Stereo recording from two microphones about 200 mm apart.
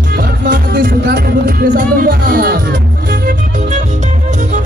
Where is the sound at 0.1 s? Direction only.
45° right (ahead or behind).